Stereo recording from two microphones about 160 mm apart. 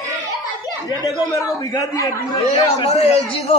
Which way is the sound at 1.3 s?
20° left (ahead or behind).